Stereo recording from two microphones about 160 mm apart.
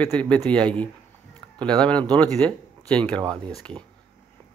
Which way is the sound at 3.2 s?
25° right (ahead or behind).